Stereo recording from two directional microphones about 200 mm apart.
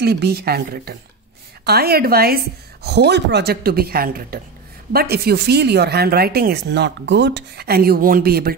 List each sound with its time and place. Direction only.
0.0 s speech: 55° right (ahead or behind)